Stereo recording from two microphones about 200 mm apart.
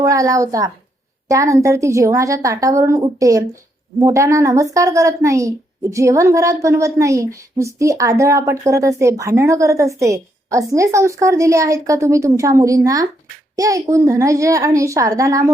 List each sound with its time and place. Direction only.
0.0 s a woman's voice: 15° right (ahead or behind)